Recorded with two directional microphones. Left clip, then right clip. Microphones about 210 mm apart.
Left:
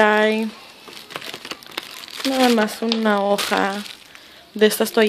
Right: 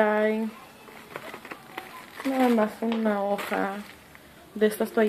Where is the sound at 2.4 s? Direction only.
45° left (ahead or behind).